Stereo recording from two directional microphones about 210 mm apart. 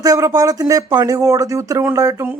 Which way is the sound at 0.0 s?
15° right (ahead or behind).